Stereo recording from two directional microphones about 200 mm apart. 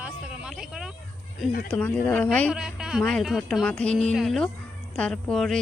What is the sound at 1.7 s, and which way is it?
Speech, 5° left (ahead or behind).